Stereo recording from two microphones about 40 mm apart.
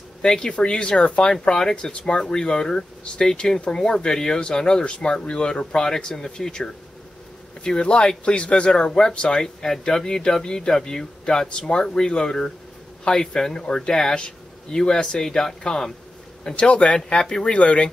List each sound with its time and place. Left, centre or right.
0.2 s speech: centre
1.4 s speech: centre